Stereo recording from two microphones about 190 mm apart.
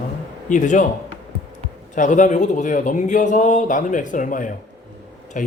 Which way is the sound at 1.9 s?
40° left (ahead or behind).